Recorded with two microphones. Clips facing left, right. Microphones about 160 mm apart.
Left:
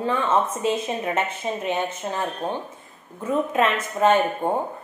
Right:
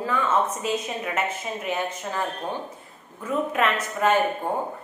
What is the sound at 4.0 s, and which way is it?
Speech, 25° left (ahead or behind).